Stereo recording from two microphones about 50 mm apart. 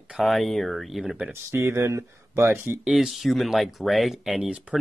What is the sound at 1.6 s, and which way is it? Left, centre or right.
Speech, right.